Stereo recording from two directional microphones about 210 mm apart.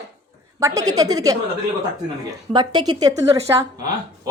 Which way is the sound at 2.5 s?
20° right (ahead or behind).